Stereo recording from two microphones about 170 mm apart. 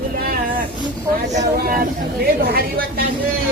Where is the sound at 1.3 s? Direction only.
55° right (ahead or behind).